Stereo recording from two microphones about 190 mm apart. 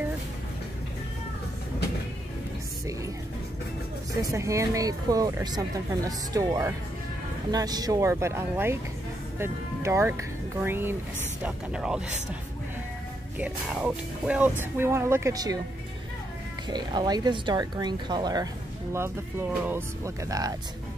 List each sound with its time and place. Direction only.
4.2 s speech: 15° right (ahead or behind)
13.4 s speech: 5° right (ahead or behind)
16.7 s speech: 20° right (ahead or behind)
19.7 s speech: 15° right (ahead or behind)